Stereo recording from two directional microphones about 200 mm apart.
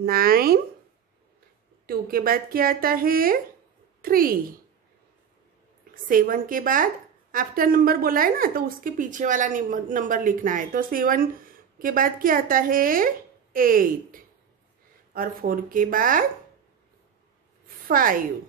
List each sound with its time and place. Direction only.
0.0 s a woman's voice: 50° right (ahead or behind)
1.9 s a woman's voice: 50° right (ahead or behind)
6.0 s a woman's voice: 45° right (ahead or behind)
17.8 s a woman's voice: 45° right (ahead or behind)